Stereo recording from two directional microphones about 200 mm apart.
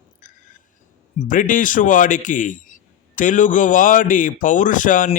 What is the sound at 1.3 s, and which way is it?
A man's voice, 40° left (ahead or behind).